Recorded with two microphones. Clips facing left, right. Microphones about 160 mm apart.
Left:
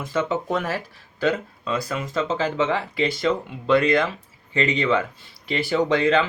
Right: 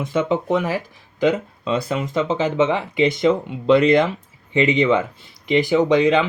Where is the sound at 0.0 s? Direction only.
20° right (ahead or behind).